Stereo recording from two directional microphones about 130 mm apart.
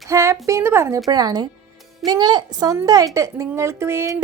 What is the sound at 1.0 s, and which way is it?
A woman's voice, 30° right (ahead or behind).